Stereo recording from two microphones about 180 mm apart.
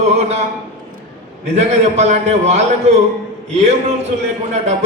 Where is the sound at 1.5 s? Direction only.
35° right (ahead or behind).